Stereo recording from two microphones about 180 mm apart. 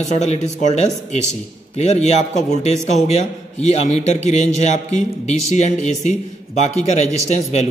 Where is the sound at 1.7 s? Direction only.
40° left (ahead or behind).